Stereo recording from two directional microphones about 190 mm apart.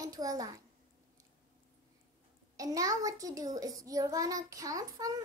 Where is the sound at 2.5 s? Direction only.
20° right (ahead or behind).